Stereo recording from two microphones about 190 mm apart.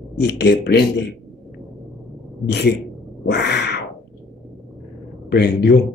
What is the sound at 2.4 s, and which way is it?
Speech, centre (ahead or behind).